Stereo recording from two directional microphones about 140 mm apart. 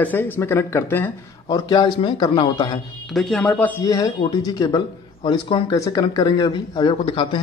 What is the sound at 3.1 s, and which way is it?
Speech, 5° left (ahead or behind).